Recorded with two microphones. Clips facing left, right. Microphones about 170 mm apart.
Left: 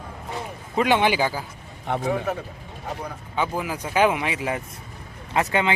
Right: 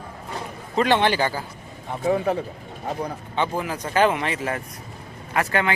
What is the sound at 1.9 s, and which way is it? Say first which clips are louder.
Speech: left 6 dB; 75° left (ahead or behind).